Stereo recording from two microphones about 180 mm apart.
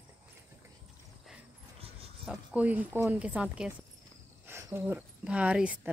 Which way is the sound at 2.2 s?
10° right (ahead or behind).